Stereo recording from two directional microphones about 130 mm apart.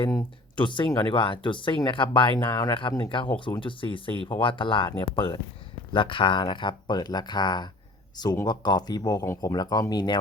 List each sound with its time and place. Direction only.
0.0 s speech: 20° left (ahead or behind)
0.5 s speech: 40° left (ahead or behind)